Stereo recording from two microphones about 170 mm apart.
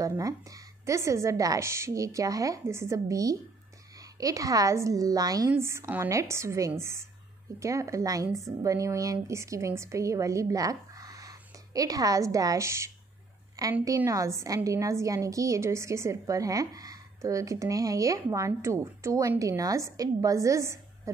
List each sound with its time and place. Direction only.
0.0 s a woman's voice: 20° right (ahead or behind)